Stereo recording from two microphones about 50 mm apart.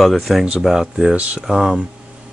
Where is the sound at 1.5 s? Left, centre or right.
Centre.